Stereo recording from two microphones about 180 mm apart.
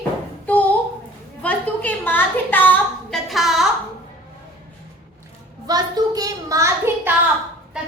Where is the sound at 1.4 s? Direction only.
10° left (ahead or behind).